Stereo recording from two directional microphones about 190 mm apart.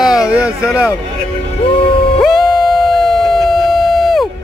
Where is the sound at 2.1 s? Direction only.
Centre (ahead or behind).